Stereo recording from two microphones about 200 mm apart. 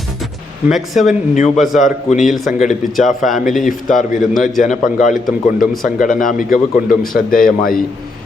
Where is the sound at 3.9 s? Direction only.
40° left (ahead or behind).